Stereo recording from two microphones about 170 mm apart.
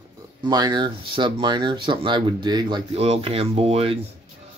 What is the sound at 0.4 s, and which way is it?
Speech, 25° right (ahead or behind).